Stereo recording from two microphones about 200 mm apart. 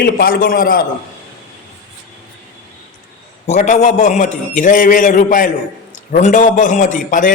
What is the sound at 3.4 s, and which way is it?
A man's voice, 35° left (ahead or behind).